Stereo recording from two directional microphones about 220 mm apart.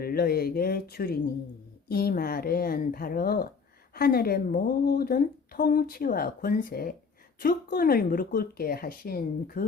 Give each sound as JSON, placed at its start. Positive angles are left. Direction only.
{"t": 0.0, "sound": "a woman's voice", "side_deg": 45}